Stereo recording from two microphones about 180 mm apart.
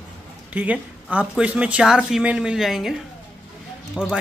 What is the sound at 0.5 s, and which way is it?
Speech, 10° right (ahead or behind).